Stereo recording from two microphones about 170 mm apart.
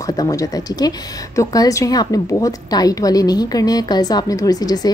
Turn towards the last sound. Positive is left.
turn(degrees=20)  # may be behind; listen again after turning